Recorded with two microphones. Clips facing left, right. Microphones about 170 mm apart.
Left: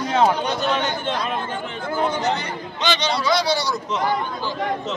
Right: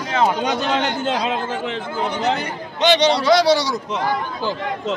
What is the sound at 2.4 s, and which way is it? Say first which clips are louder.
A man's voice: right 5 dB; 65° right (ahead or behind).